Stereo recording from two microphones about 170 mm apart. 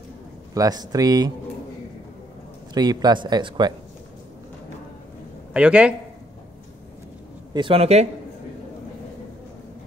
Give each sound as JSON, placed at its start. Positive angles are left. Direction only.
{"t": 0.6, "sound": "speech", "side_deg": -20}
{"t": 2.7, "sound": "speech", "side_deg": -25}
{"t": 5.5, "sound": "speech", "side_deg": -5}
{"t": 7.5, "sound": "speech", "side_deg": -30}